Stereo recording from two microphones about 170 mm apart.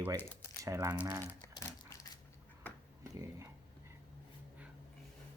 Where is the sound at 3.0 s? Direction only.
20° right (ahead or behind).